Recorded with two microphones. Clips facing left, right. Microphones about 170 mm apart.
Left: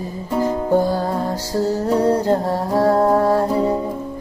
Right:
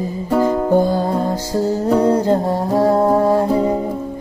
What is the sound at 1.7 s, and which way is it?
Humming, 15° right (ahead or behind).